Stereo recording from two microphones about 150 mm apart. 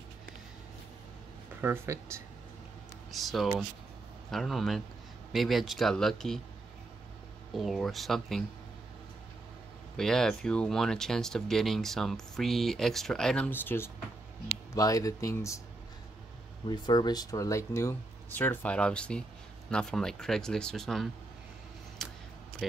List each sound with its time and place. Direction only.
1.6 s speech: 15° right (ahead or behind)
3.1 s speech: centre (ahead or behind)
7.5 s speech: centre (ahead or behind)
9.9 s speech: 5° left (ahead or behind); by 15.6 s 20° left (ahead or behind)
16.6 s speech: 30° left (ahead or behind); by 21.1 s centre (ahead or behind)
22.0 s a sound: centre (ahead or behind)
22.6 s speech: centre (ahead or behind)